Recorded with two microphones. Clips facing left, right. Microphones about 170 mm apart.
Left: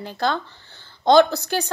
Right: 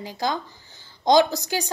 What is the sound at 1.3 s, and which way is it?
Speech, 15° right (ahead or behind).